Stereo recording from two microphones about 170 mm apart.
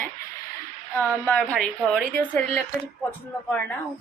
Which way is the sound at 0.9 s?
10° left (ahead or behind).